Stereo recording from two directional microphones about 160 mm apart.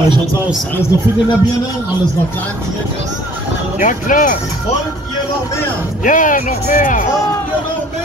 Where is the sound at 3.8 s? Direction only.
55° left (ahead or behind).